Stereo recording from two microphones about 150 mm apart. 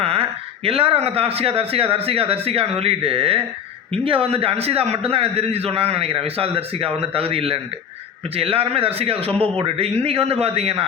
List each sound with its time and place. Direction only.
0.0 s a man's voice: 40° right (ahead or behind)